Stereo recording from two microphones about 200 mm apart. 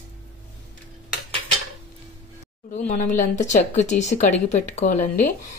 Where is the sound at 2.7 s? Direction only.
40° left (ahead or behind).